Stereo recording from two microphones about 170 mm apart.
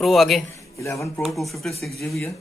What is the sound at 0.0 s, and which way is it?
Speech, centre (ahead or behind).